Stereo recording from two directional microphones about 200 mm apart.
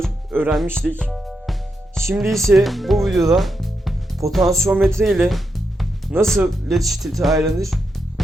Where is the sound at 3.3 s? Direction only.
Centre (ahead or behind).